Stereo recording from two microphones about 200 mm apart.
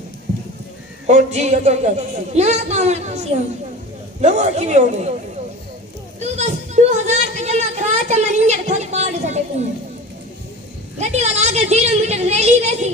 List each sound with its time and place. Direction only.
1.0 s speech: 35° right (ahead or behind)
6.1 s a sound: 35° right (ahead or behind)
11.0 s a woman's voice: 35° right (ahead or behind)